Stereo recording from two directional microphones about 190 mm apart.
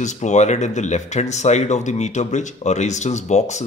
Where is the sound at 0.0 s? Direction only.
40° left (ahead or behind).